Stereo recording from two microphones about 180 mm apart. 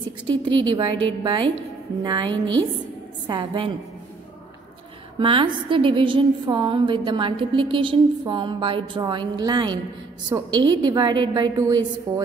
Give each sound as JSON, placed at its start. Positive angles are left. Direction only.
{"t": 0.3, "sound": "a woman's voice", "side_deg": -25}
{"t": 5.2, "sound": "a woman's voice", "side_deg": -30}